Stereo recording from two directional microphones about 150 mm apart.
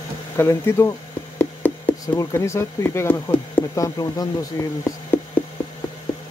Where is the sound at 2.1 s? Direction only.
20° left (ahead or behind).